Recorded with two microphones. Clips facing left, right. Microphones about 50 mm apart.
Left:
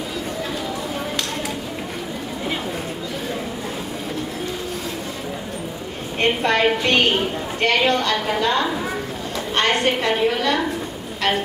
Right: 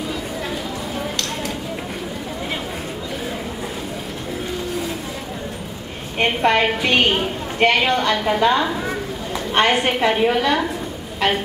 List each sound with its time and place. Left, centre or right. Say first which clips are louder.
6.1 s a woman's voice: right 2 dB; centre